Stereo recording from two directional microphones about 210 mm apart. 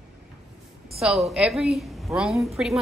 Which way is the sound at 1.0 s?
5° right (ahead or behind).